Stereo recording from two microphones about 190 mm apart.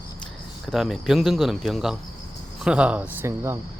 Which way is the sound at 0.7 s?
Centre (ahead or behind).